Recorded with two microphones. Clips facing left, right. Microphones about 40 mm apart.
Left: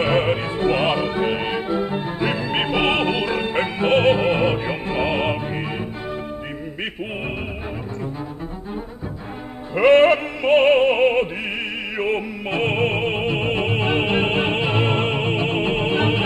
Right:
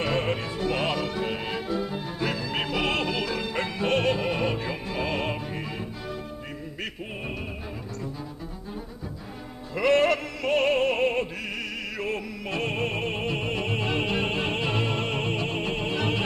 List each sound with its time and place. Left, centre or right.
0.0 s music: left
9.8 s opera: left
12.0 s music: left